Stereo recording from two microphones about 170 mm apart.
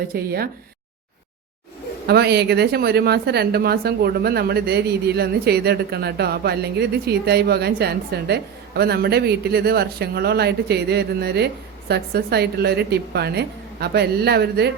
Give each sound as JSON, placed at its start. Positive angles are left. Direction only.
{"t": 0.1, "sound": "speech", "side_deg": -65}
{"t": 2.0, "sound": "a woman's voice", "side_deg": -70}